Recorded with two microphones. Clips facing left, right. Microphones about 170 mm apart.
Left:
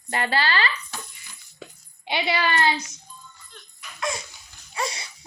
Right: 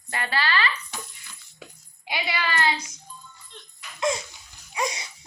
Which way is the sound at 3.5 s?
25° right (ahead or behind).